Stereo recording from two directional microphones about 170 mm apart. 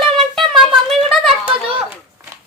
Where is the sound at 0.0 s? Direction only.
Centre (ahead or behind).